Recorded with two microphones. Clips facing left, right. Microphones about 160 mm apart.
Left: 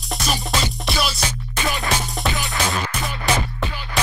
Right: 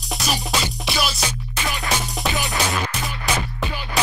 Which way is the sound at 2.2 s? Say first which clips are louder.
Right 2 dB; 20° right (ahead or behind).